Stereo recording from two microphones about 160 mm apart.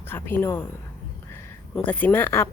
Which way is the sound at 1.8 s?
10° left (ahead or behind).